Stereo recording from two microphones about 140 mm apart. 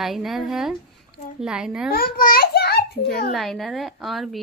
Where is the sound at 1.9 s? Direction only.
90° left.